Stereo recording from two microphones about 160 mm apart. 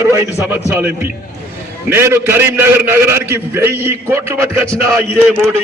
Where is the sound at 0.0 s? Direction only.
15° right (ahead or behind).